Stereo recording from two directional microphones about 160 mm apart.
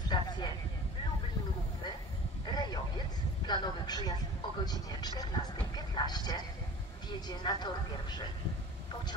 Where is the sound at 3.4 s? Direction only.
25° left (ahead or behind).